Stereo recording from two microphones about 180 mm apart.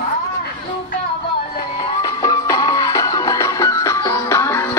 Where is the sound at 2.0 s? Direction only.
20° left (ahead or behind).